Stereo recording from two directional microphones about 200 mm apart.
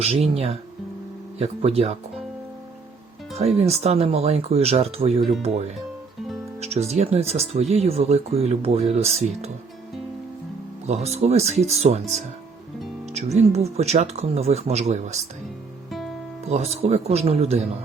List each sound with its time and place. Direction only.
0.0 s speech: 30° right (ahead or behind)
3.3 s speech: 30° right (ahead or behind)
10.8 s speech: 35° right (ahead or behind)
15.9 s music: centre (ahead or behind)
16.5 s speech: 35° right (ahead or behind)